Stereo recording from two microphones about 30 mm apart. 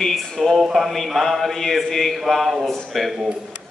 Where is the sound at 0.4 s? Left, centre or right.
Centre.